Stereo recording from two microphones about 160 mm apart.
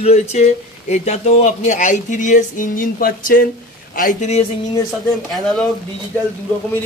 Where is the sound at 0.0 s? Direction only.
45° left (ahead or behind).